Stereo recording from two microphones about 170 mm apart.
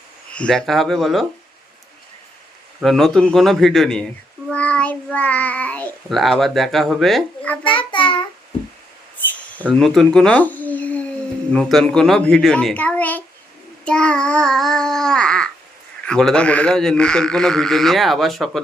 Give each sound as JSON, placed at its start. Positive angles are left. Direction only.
{"t": 0.3, "sound": "a child's voice", "side_deg": 5}
{"t": 2.8, "sound": "a child's voice", "side_deg": 0}
{"t": 7.6, "sound": "child singing", "side_deg": 30}
{"t": 9.1, "sound": "a sound", "side_deg": 10}
{"t": 9.7, "sound": "a child's voice", "side_deg": 0}
{"t": 13.8, "sound": "babbling", "side_deg": 5}
{"t": 16.0, "sound": "a child's voice", "side_deg": 5}